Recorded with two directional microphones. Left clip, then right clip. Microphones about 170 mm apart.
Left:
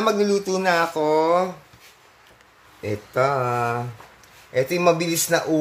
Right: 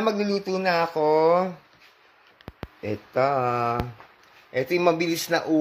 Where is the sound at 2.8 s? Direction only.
25° right (ahead or behind).